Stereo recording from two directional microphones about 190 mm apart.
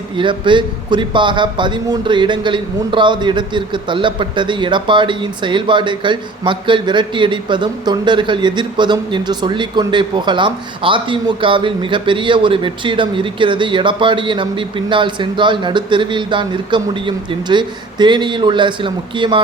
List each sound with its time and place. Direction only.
0.2 s a man's voice: 25° right (ahead or behind)